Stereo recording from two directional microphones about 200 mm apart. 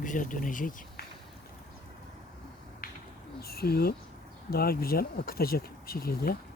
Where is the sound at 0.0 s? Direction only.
40° left (ahead or behind).